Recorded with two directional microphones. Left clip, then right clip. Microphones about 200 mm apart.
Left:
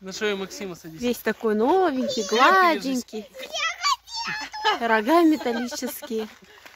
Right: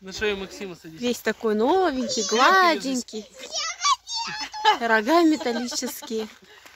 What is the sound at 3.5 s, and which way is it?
Children playing, 30° left (ahead or behind).